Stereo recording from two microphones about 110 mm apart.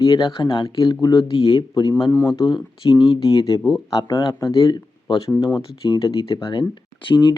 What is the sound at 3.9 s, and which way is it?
Speech, 40° left (ahead or behind).